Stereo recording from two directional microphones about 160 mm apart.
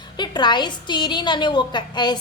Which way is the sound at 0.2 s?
30° left (ahead or behind).